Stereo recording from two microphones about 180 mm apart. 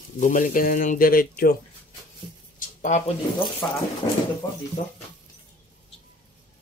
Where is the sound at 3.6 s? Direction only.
10° left (ahead or behind).